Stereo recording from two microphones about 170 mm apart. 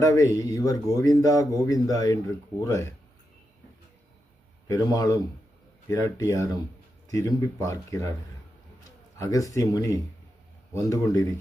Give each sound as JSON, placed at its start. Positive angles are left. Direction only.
{"t": 0.0, "sound": "speech", "side_deg": 20}
{"t": 4.7, "sound": "speech", "side_deg": 20}
{"t": 9.1, "sound": "speech", "side_deg": 20}